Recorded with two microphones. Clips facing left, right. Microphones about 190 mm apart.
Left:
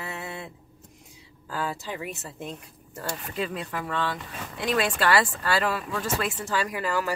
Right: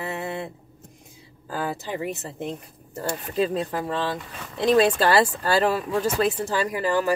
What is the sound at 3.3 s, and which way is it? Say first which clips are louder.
Speech: right 9 dB; 35° right (ahead or behind).